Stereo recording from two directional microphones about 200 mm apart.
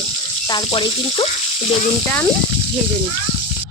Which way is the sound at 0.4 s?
25° left (ahead or behind).